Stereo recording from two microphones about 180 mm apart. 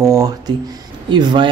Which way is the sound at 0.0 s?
20° right (ahead or behind).